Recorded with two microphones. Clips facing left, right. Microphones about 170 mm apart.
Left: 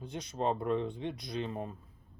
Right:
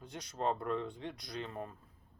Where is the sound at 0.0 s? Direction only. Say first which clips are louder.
Left 3 dB; 25° left (ahead or behind).